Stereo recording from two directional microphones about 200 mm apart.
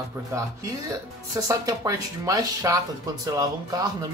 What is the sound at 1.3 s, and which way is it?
Speech, 20° right (ahead or behind).